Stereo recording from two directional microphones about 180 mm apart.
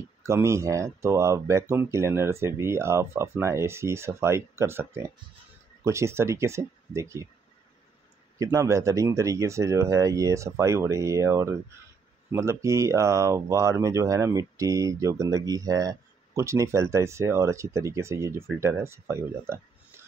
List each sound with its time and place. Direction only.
0.2 s speech: 15° right (ahead or behind)
8.4 s speech: 15° right (ahead or behind)